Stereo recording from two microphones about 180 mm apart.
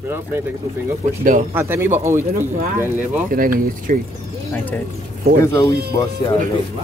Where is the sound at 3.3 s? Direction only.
50° right (ahead or behind).